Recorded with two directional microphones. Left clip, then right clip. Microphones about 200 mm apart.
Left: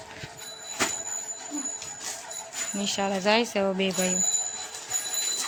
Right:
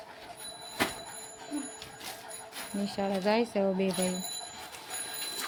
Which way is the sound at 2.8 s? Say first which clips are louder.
Left 5 dB; centre (ahead or behind).